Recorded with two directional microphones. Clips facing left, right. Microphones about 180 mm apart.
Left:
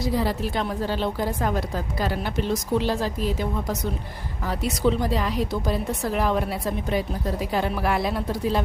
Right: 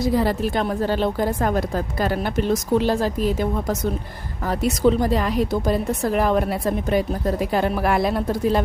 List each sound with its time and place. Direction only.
0.0 s a woman's voice: 50° right (ahead or behind)